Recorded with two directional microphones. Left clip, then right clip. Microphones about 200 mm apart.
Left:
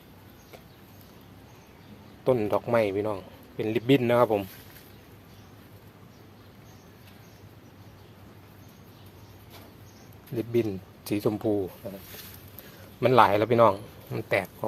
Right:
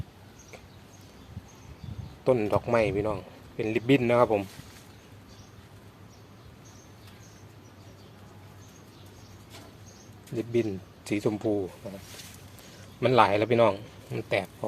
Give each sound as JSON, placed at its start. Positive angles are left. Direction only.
{"t": 2.2, "sound": "a man's voice", "side_deg": 0}
{"t": 10.3, "sound": "speech", "side_deg": 15}
{"t": 13.0, "sound": "speech", "side_deg": 15}